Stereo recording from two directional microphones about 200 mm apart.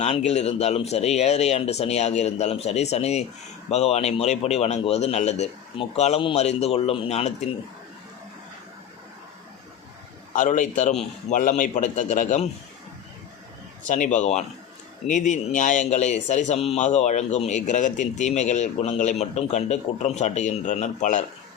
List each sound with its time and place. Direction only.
0.0 s speech: 35° left (ahead or behind)
10.3 s speech: 40° left (ahead or behind)
13.8 s speech: 40° left (ahead or behind)